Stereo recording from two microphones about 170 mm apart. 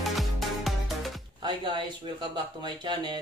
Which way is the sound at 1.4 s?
25° right (ahead or behind).